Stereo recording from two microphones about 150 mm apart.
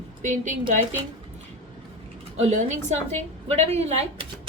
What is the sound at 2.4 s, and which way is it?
A woman's voice, 50° right (ahead or behind).